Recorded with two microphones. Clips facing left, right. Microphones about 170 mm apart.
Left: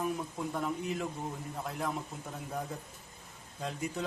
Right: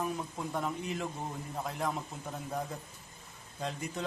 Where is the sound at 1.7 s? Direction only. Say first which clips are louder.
Right 1 dB; centre (ahead or behind).